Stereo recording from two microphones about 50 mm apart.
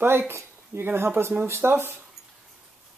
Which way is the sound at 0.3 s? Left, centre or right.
Right.